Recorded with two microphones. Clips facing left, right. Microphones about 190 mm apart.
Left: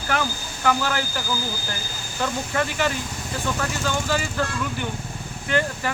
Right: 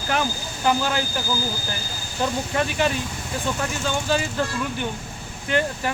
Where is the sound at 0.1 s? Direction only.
20° right (ahead or behind).